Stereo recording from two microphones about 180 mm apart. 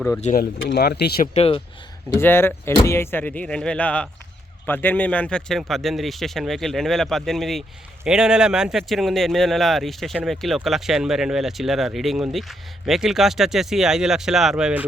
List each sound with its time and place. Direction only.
0.2 s speech: 40° left (ahead or behind)
0.6 s speech: 75° left (ahead or behind); by 1.3 s 60° left (ahead or behind)
1.3 s speech: 30° left (ahead or behind)
2.1 s speech: 15° left (ahead or behind); by 14.8 s 10° right (ahead or behind)